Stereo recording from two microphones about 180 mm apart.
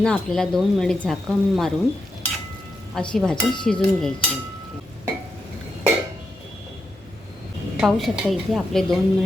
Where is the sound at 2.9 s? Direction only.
5° left (ahead or behind).